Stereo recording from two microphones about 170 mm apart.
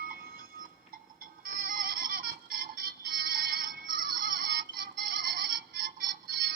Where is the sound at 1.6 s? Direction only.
60° right (ahead or behind).